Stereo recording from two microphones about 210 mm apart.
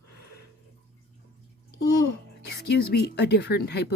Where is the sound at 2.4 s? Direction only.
50° left (ahead or behind).